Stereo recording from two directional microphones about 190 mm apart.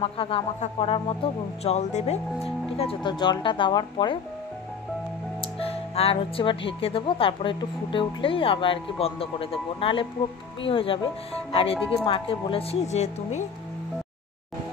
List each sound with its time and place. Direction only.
0.0 s speech: 30° left (ahead or behind)
5.6 s speech: 30° left (ahead or behind)